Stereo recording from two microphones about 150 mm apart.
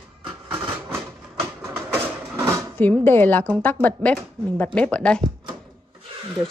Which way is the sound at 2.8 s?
15° left (ahead or behind).